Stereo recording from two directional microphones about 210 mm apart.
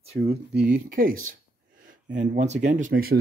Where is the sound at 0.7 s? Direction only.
40° right (ahead or behind).